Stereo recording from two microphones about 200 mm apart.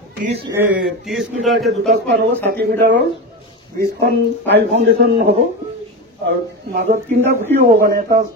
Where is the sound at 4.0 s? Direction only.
55° right (ahead or behind).